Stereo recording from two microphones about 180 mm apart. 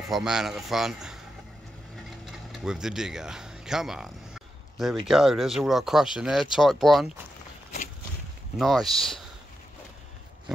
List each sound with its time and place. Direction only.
0.1 s speech: 5° right (ahead or behind)
2.6 s speech: 5° right (ahead or behind)
8.5 s speech: centre (ahead or behind)